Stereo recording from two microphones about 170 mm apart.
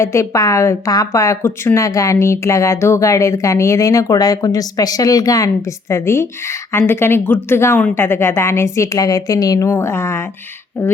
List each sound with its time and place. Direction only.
0.0 s a woman's voice: 15° left (ahead or behind)